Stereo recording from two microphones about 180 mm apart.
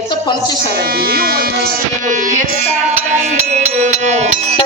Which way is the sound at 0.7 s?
55° right (ahead or behind).